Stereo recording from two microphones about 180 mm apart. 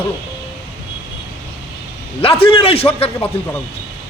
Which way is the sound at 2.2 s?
30° left (ahead or behind).